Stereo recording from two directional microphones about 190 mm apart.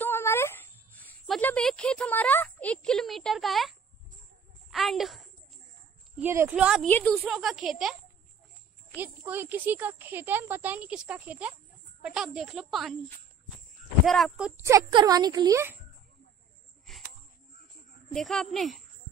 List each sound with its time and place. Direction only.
0.0 s a sound: 10° left (ahead or behind)
4.6 s a woman's voice: centre (ahead or behind)
6.2 s speech: 10° right (ahead or behind)
6.9 s a child's voice: 10° left (ahead or behind)
14.0 s speech: centre (ahead or behind)
14.6 s a child's voice: 15° right (ahead or behind)
16.8 s a sound: centre (ahead or behind)
18.1 s speech: centre (ahead or behind)